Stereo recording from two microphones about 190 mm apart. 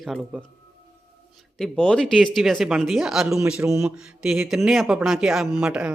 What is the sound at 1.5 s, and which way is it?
Speech, centre (ahead or behind).